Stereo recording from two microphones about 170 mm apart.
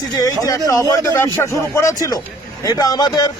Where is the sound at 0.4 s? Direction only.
20° left (ahead or behind).